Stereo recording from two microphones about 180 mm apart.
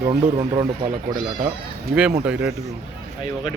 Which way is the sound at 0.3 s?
25° right (ahead or behind).